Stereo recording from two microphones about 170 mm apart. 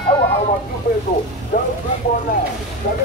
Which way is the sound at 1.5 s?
60° left (ahead or behind).